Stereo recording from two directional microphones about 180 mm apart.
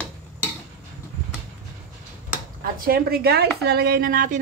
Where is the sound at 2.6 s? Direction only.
55° right (ahead or behind).